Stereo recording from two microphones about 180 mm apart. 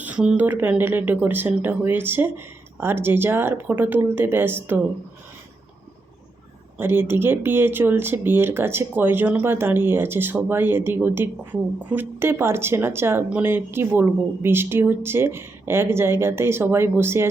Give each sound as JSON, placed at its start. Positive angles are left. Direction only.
{"t": 0.0, "sound": "speech", "side_deg": -5}
{"t": 6.7, "sound": "speech", "side_deg": -10}